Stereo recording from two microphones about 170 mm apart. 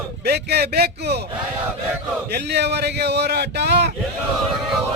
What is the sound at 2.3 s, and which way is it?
Speech, 75° right (ahead or behind).